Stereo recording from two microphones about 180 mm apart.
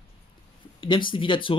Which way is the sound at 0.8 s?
25° left (ahead or behind).